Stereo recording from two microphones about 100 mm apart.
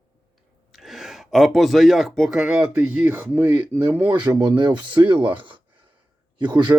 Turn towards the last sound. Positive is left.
turn(degrees=-50)  # may be behind; listen again after turning